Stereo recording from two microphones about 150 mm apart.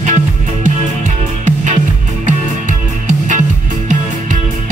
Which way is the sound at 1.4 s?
55° right (ahead or behind).